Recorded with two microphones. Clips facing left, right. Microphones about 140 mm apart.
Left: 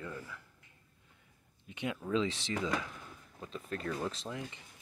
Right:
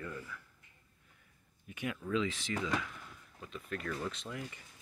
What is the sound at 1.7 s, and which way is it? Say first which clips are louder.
Speech: left 2 dB; 25° left (ahead or behind).